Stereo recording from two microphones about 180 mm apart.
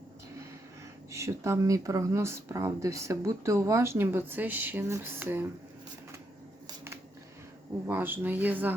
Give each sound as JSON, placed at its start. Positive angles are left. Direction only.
{"t": 1.1, "sound": "speech", "side_deg": -15}
{"t": 7.9, "sound": "speech", "side_deg": -10}